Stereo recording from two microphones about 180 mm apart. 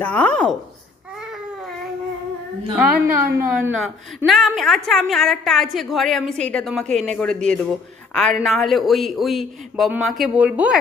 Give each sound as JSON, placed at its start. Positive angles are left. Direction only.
{"t": 0.0, "sound": "a woman's voice", "side_deg": 10}
{"t": 2.7, "sound": "a woman's voice", "side_deg": -5}